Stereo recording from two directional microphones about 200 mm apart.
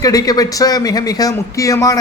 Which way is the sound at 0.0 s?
20° left (ahead or behind).